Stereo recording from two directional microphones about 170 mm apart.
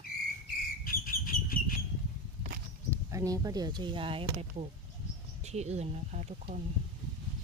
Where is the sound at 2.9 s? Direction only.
20° right (ahead or behind); by 6.6 s 40° right (ahead or behind).